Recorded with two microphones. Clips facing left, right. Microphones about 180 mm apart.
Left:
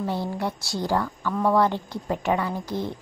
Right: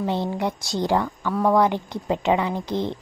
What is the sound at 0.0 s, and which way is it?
A woman's voice, 20° right (ahead or behind).